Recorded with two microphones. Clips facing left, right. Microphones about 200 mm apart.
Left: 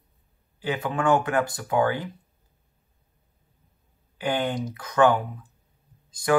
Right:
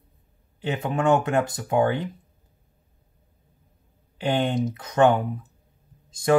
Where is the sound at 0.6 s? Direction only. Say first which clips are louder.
Right 1 dB; 25° right (ahead or behind).